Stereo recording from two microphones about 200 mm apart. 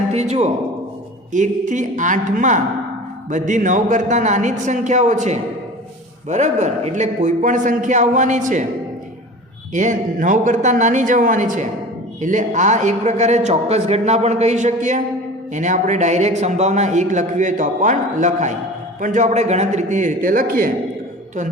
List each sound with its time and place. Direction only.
0.1 s a man's voice: 35° right (ahead or behind)
9.7 s a man's voice: 40° right (ahead or behind)